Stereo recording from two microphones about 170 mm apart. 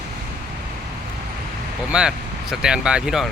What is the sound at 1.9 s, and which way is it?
Speech, 5° right (ahead or behind).